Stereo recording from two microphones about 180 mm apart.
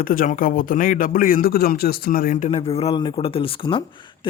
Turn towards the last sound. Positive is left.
turn(degrees=30)  # may be behind; listen again after turning